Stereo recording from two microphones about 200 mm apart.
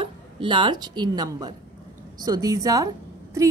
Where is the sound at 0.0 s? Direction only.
25° right (ahead or behind).